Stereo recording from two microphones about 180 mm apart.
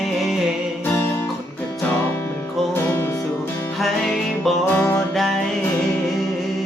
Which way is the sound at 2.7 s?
15° left (ahead or behind).